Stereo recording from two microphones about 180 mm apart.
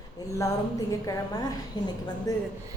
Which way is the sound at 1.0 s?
20° left (ahead or behind).